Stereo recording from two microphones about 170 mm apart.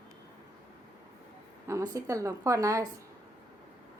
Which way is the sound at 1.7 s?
20° right (ahead or behind).